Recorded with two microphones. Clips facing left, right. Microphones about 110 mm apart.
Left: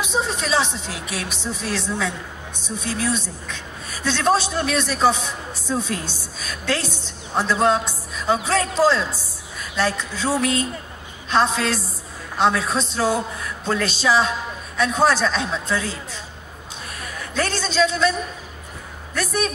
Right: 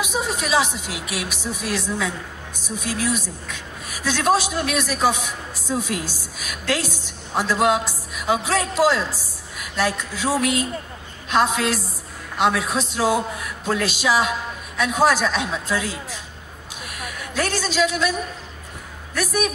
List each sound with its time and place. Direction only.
0.0 s a woman's voice: 10° right (ahead or behind)
3.9 s a sound: 10° right (ahead or behind)
4.3 s a woman's voice: 10° right (ahead or behind)
12.7 s a woman's voice: 10° right (ahead or behind)
19.1 s a woman's voice: 10° right (ahead or behind)